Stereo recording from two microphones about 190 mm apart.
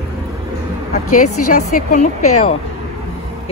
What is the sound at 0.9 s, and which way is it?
A woman's voice, 40° left (ahead or behind).